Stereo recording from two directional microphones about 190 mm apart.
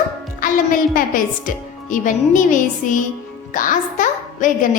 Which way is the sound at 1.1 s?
45° left (ahead or behind).